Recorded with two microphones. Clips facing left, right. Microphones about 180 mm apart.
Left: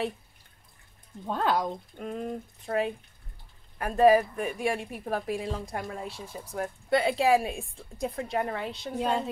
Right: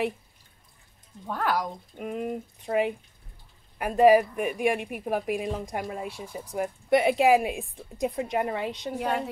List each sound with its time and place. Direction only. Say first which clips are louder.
1.2 s speech: left 1 dB; 25° left (ahead or behind)
2.0 s a woman's voice: right 6 dB; 10° right (ahead or behind)
8.9 s speech: left 2 dB; 20° left (ahead or behind)